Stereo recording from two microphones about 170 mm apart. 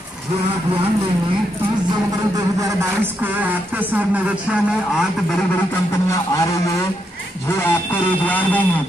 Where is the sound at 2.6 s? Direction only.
10° right (ahead or behind).